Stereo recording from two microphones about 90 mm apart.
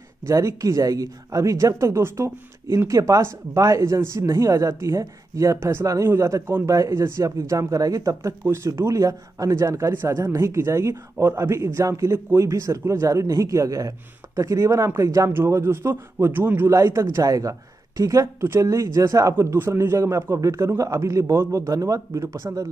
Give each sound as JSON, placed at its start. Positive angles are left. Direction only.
{"t": 0.3, "sound": "a man's voice", "side_deg": -35}
{"t": 16.7, "sound": "speech", "side_deg": -35}